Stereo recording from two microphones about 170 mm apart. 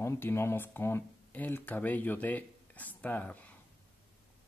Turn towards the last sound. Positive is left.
turn(degrees=10)  # may be behind; listen again after turning